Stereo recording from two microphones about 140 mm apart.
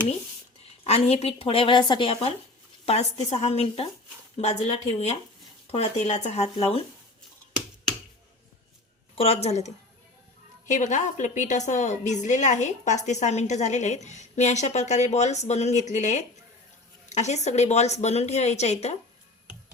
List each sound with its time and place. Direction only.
0.9 s speech: 45° left (ahead or behind)
9.1 s a woman's voice: 50° left (ahead or behind)